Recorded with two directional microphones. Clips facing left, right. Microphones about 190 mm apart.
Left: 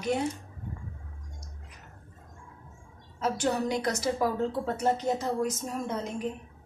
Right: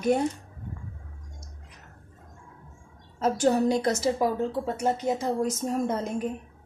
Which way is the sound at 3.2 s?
35° right (ahead or behind).